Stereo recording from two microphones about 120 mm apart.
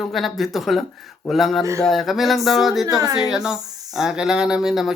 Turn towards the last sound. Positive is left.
turn(degrees=0)  # may be behind; listen again after turning